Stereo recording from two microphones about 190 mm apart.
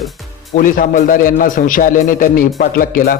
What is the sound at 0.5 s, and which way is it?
Speech, 45° left (ahead or behind).